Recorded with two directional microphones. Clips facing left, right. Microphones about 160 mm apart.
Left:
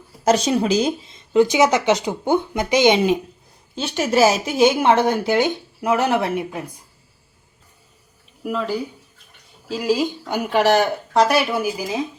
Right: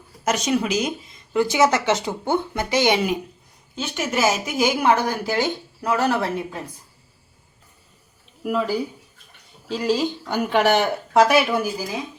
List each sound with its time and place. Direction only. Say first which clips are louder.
0.3 s speech: left 4 dB; 30° left (ahead or behind)
3.8 s speech: left 6 dB; 30° left (ahead or behind); by 6.6 s 15° left (ahead or behind)
8.4 s speech: right 1 dB; 5° right (ahead or behind)
9.6 s speech: left 1 dB; 5° left (ahead or behind)